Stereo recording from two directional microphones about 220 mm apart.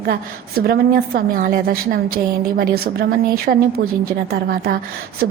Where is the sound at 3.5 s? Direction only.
40° right (ahead or behind).